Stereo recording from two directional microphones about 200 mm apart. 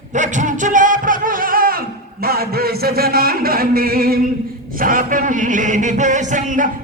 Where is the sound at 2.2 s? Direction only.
50° right (ahead or behind).